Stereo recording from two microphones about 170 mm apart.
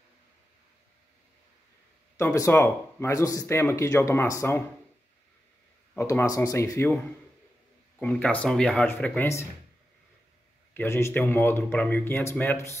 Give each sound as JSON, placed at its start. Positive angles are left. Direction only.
{"t": 2.1, "sound": "speech", "side_deg": 15}
{"t": 5.9, "sound": "speech", "side_deg": 15}
{"t": 8.0, "sound": "speech", "side_deg": 5}
{"t": 10.7, "sound": "speech", "side_deg": 15}